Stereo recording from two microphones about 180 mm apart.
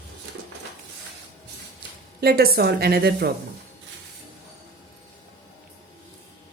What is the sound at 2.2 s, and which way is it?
A woman's voice, 60° right (ahead or behind).